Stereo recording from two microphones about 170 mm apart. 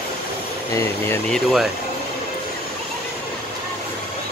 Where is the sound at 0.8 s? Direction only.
15° left (ahead or behind).